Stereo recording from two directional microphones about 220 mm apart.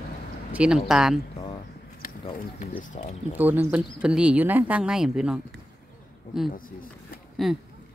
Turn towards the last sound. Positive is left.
turn(degrees=0)  # may be behind; listen again after turning